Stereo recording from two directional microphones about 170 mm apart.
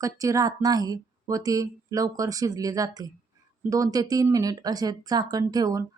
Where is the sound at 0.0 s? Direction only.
20° right (ahead or behind).